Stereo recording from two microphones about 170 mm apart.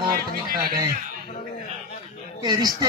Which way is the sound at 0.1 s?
60° right (ahead or behind).